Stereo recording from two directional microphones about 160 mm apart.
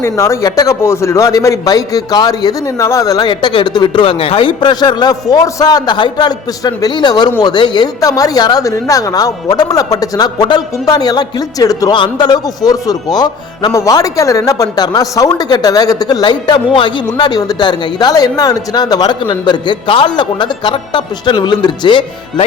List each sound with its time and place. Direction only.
0.0 s a man's voice: 15° left (ahead or behind)